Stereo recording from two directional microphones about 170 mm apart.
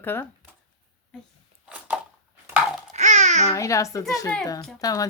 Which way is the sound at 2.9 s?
45° right (ahead or behind).